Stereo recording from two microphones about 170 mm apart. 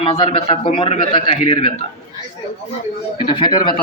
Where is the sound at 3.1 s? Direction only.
30° left (ahead or behind).